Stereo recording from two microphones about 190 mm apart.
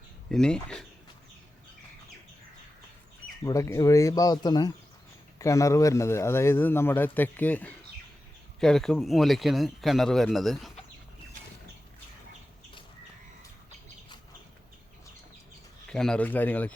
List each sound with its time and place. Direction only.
0.3 s a man's voice: 5° left (ahead or behind)
3.4 s a man's voice: 15° left (ahead or behind); by 10.7 s centre (ahead or behind)
15.9 s a man's voice: 5° left (ahead or behind)